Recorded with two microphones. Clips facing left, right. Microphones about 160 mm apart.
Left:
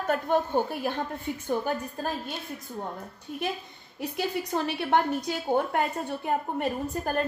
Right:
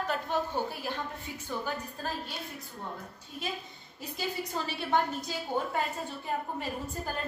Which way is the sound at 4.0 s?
60° left (ahead or behind).